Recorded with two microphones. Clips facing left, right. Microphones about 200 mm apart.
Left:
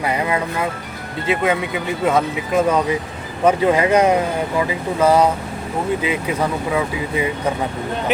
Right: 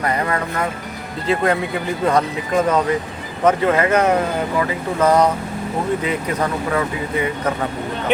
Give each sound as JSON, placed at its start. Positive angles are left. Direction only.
{"t": 0.0, "sound": "speech", "side_deg": 10}